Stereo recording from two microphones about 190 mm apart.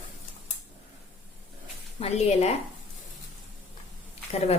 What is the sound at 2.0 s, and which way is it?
Speech, 35° left (ahead or behind).